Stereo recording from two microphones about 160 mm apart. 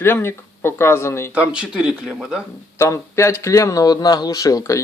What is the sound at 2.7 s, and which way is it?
A man's voice, 15° left (ahead or behind).